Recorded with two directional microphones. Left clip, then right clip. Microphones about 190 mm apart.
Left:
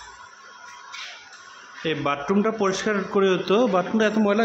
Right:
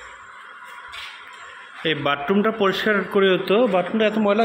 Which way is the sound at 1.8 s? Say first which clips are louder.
Right 3 dB; centre (ahead or behind).